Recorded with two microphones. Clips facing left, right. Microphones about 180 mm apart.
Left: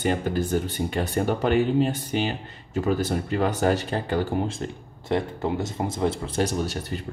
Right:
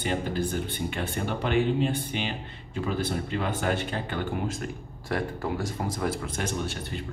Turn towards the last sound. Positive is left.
turn(degrees=40)  # may be behind; listen again after turning